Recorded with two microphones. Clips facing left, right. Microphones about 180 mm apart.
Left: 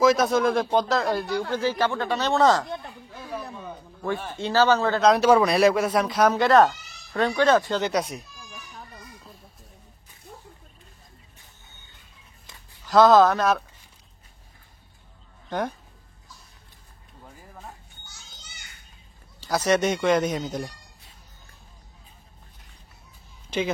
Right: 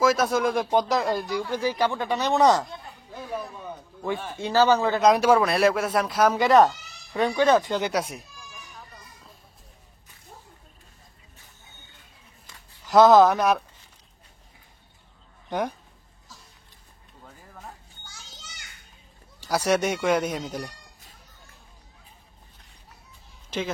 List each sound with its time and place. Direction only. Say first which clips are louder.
0.0 s speech: left 2 dB; 5° right (ahead or behind)
0.7 s speech: even; 15° right (ahead or behind)
4.4 s speech: even; 15° right (ahead or behind)
12.8 s speech: right 1 dB; 20° right (ahead or behind)
18.0 s children playing: right 3 dB; 90° right
19.4 s speech: left 1 dB; 10° right (ahead or behind)
23.5 s speech: left 3 dB; centre (ahead or behind)